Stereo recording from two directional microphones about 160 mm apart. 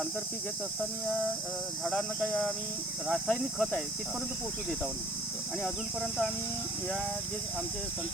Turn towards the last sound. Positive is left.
turn(degrees=0)  # may be behind; listen again after turning